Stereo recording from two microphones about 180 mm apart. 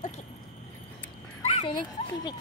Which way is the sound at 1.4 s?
30° left (ahead or behind).